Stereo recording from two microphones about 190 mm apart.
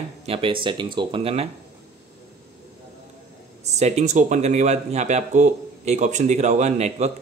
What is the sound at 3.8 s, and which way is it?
Speech, 35° right (ahead or behind).